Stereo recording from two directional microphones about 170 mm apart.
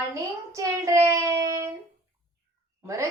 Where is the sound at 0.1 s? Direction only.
20° right (ahead or behind).